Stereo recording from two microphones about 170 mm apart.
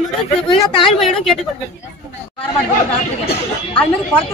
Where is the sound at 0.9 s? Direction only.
Centre (ahead or behind).